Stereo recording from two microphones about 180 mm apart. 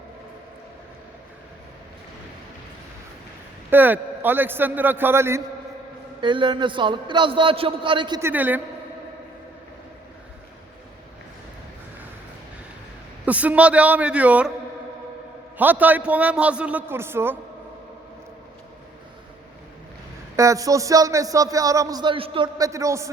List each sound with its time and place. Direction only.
3.7 s a man's voice: 10° right (ahead or behind)
6.2 s music: 25° right (ahead or behind)
8.2 s a man's voice: 10° right (ahead or behind)
13.2 s a man's voice: 10° right (ahead or behind)
15.5 s a man's voice: 10° right (ahead or behind)
20.3 s music: 15° right (ahead or behind)